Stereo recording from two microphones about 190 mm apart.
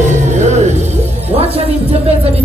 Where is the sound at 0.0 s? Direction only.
40° right (ahead or behind).